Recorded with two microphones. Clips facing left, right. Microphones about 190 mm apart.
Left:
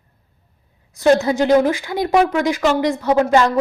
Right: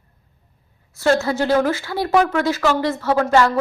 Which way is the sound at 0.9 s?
15° left (ahead or behind).